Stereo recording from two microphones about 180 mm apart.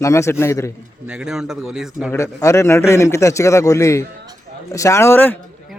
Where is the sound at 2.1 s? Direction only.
15° left (ahead or behind).